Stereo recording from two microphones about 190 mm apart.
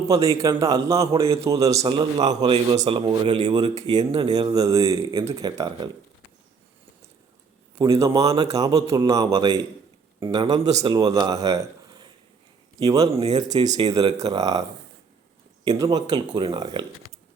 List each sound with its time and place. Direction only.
0.1 s a man's voice: 15° right (ahead or behind)
7.8 s a man's voice: 15° right (ahead or behind)
15.8 s a man's voice: 20° right (ahead or behind)